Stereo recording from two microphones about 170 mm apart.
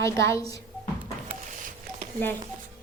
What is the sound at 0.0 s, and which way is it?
Speech, 20° left (ahead or behind).